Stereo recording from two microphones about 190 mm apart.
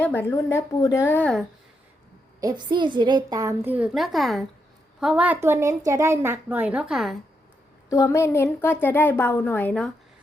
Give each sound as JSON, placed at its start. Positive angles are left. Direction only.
{"t": 0.0, "sound": "a woman's voice", "side_deg": 10}
{"t": 2.4, "sound": "a woman's voice", "side_deg": -20}
{"t": 7.9, "sound": "a woman's voice", "side_deg": 15}